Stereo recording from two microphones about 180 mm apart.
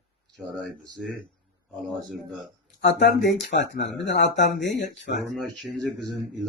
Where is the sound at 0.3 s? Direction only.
Centre (ahead or behind).